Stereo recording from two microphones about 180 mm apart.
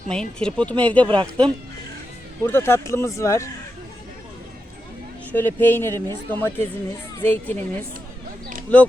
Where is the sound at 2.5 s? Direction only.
15° left (ahead or behind).